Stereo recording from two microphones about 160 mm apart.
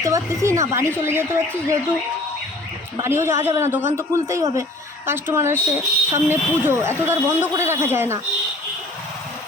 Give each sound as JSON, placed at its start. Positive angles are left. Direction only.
{"t": 0.0, "sound": "speech", "side_deg": -20}
{"t": 3.0, "sound": "speech", "side_deg": -15}